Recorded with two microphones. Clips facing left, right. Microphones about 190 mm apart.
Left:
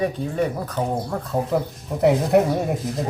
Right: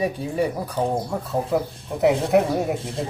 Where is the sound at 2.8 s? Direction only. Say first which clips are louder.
Left 3 dB; 30° right (ahead or behind).